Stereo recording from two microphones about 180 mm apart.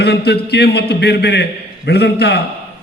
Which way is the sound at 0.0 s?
65° left (ahead or behind).